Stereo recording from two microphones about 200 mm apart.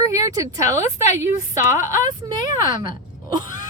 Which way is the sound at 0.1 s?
15° right (ahead or behind).